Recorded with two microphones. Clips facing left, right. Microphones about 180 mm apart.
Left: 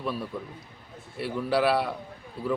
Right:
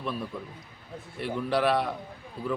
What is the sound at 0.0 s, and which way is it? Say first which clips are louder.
Speech: left 1 dB; 5° left (ahead or behind).